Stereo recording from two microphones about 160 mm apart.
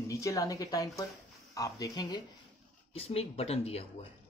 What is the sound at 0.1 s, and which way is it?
Speech, 20° left (ahead or behind).